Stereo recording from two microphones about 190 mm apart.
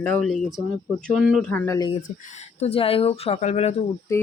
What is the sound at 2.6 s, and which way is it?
Speech, 30° left (ahead or behind).